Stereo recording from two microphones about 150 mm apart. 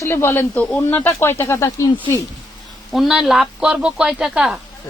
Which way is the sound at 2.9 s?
Centre (ahead or behind).